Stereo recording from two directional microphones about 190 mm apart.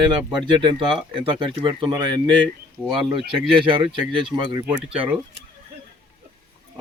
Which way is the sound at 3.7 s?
25° right (ahead or behind).